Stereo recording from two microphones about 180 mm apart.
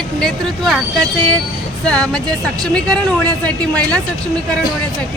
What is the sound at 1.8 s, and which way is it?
Speech, 5° left (ahead or behind).